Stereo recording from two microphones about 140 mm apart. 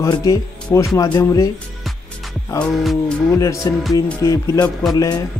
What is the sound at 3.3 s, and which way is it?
Speech, 20° left (ahead or behind).